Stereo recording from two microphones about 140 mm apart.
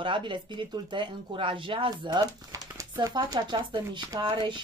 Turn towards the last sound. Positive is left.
turn(degrees=-30)  # may be behind; listen again after turning